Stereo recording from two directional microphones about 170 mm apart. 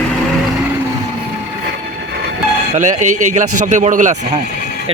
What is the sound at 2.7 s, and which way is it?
A man's voice, 45° right (ahead or behind).